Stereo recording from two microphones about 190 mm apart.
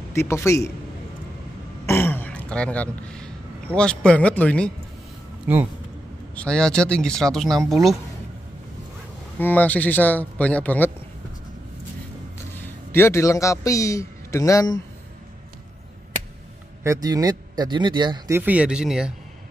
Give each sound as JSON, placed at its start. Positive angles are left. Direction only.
{"t": 0.1, "sound": "speech", "side_deg": 15}
{"t": 1.9, "sound": "a man's voice", "side_deg": 10}
{"t": 5.5, "sound": "speech", "side_deg": -10}
{"t": 6.3, "sound": "speech", "side_deg": 5}
{"t": 9.4, "sound": "speech", "side_deg": 10}
{"t": 12.5, "sound": "a man's voice", "side_deg": 15}
{"t": 16.8, "sound": "speech", "side_deg": -20}
{"t": 18.4, "sound": "speech", "side_deg": -5}